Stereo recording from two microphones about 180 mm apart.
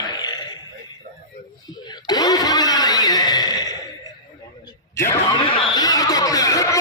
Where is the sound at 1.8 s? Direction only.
20° left (ahead or behind).